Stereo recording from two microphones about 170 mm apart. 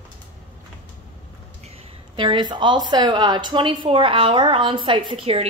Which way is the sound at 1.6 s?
35° right (ahead or behind).